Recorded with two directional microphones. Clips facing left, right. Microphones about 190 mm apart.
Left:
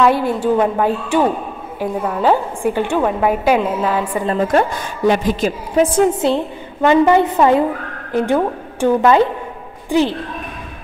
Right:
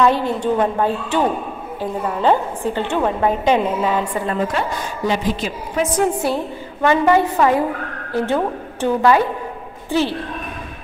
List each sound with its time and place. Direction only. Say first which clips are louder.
0.0 s a woman's voice: left 2 dB; 10° left (ahead or behind)
4.5 s a woman's voice: left 6 dB; 55° left (ahead or behind)
5.8 s a woman's voice: left 5 dB; 30° left (ahead or behind)